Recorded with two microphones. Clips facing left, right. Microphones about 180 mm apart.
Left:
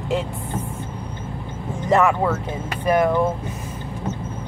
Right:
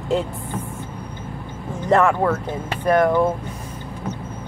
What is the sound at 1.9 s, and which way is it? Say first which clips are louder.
Speech: right 1 dB; 5° left (ahead or behind).